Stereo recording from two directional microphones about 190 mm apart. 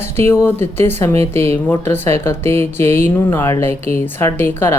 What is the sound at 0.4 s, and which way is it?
Speech, 10° left (ahead or behind).